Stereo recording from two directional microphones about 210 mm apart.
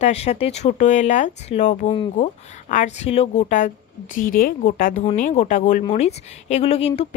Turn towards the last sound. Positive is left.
turn(degrees=30)  # may be behind; listen again after turning